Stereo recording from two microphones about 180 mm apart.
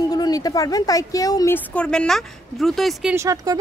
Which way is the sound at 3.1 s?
15° right (ahead or behind).